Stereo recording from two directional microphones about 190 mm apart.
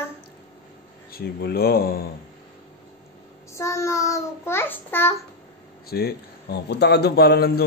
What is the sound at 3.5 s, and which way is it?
A child's voice, 15° left (ahead or behind).